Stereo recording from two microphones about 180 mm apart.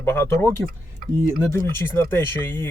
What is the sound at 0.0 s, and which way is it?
Speech, 15° left (ahead or behind).